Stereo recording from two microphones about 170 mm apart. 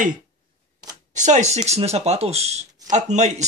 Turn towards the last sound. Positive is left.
turn(degrees=-40)  # may be behind; listen again after turning